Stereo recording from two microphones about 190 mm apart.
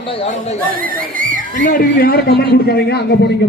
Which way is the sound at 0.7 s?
50° right (ahead or behind).